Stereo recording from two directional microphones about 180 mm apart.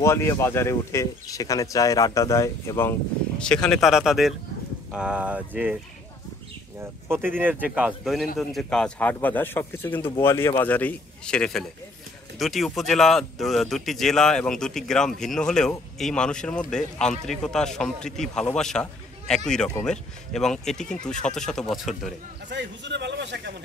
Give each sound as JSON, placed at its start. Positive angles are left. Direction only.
{"t": 0.0, "sound": "speech", "side_deg": 15}
{"t": 6.8, "sound": "speech", "side_deg": -10}
{"t": 22.5, "sound": "a man's voice", "side_deg": -75}